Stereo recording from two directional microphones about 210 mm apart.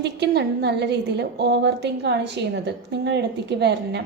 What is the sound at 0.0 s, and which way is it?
A woman's voice, 50° right (ahead or behind).